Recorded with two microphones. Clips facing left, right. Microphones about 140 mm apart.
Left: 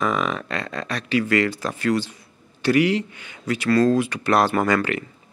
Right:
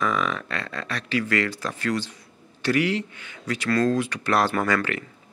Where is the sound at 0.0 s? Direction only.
20° left (ahead or behind).